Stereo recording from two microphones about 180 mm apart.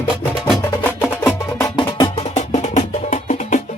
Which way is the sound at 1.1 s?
15° left (ahead or behind).